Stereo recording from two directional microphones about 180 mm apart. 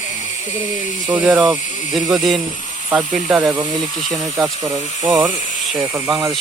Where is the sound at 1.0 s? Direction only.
5° right (ahead or behind).